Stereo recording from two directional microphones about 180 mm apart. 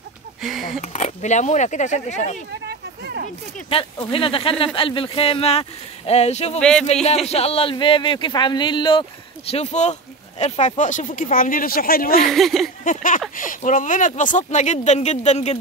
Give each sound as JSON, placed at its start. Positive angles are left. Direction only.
{"t": 0.4, "sound": "speech", "side_deg": 0}
{"t": 0.7, "sound": "speech", "side_deg": 40}
{"t": 3.7, "sound": "speech", "side_deg": 30}
{"t": 6.6, "sound": "speech", "side_deg": 5}
{"t": 7.2, "sound": "speech", "side_deg": 35}
{"t": 9.5, "sound": "speech", "side_deg": 35}
{"t": 12.2, "sound": "speech", "side_deg": 0}
{"t": 12.8, "sound": "speech", "side_deg": 45}